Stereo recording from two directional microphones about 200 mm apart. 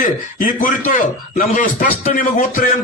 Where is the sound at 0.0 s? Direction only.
40° left (ahead or behind).